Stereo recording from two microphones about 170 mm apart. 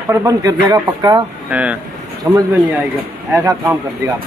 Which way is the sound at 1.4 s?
10° right (ahead or behind).